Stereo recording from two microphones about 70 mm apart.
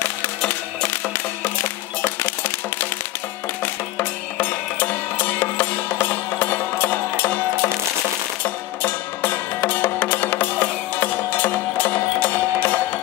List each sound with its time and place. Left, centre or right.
1.4 s music: left
8.8 s music: left